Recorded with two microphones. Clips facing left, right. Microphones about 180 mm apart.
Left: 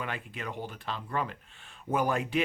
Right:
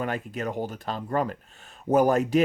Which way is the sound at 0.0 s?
40° right (ahead or behind).